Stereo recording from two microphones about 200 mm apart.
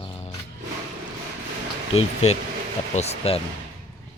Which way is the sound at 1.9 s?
30° left (ahead or behind).